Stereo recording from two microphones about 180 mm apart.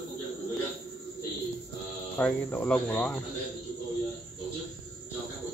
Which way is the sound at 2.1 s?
10° left (ahead or behind).